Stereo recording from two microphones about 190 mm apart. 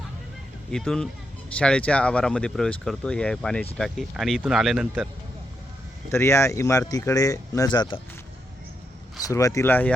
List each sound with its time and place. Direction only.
0.7 s speech: 5° left (ahead or behind)
6.1 s speech: 15° left (ahead or behind)
9.2 s speech: 15° left (ahead or behind)